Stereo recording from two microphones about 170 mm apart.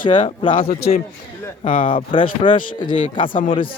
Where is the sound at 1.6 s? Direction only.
30° left (ahead or behind).